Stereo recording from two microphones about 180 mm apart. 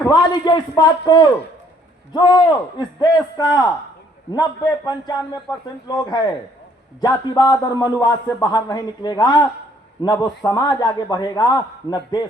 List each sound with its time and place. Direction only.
0.1 s a man's voice: 25° left (ahead or behind)
7.0 s a man's voice: 25° left (ahead or behind)